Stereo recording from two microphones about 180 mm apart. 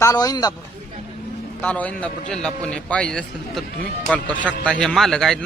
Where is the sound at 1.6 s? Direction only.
10° left (ahead or behind).